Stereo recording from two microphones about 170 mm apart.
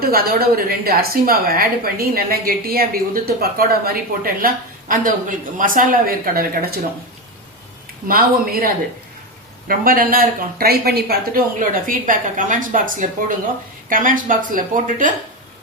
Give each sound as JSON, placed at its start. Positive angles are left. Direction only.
{"t": 0.0, "sound": "a woman's voice", "side_deg": -60}
{"t": 8.0, "sound": "a woman's voice", "side_deg": -60}
{"t": 11.9, "sound": "a woman's voice", "side_deg": -50}